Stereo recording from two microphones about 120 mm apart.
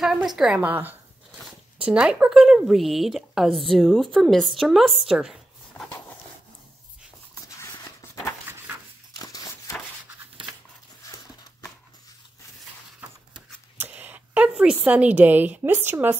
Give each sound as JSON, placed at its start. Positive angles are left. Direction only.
{"t": 0.0, "sound": "a woman's voice", "side_deg": -5}
{"t": 0.6, "sound": "a woman's voice", "side_deg": -15}
{"t": 5.9, "sound": "dog", "side_deg": 15}
{"t": 7.7, "sound": "a sound", "side_deg": 30}
{"t": 13.7, "sound": "a sound", "side_deg": -15}
{"t": 14.5, "sound": "a woman's voice", "side_deg": -5}